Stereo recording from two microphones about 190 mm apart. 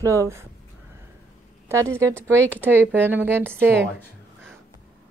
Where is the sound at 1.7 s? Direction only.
15° right (ahead or behind).